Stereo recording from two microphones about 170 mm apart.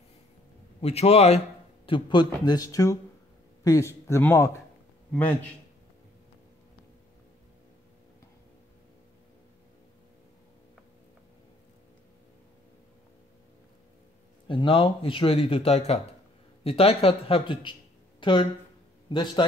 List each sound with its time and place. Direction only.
0.7 s a man's voice: 35° left (ahead or behind); by 4.5 s 15° left (ahead or behind)
14.5 s speech: 30° left (ahead or behind)